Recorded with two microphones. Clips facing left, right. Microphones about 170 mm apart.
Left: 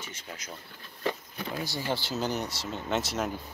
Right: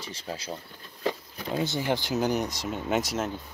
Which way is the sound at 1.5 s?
20° right (ahead or behind).